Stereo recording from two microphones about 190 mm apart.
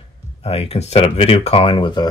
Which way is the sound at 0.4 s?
30° left (ahead or behind).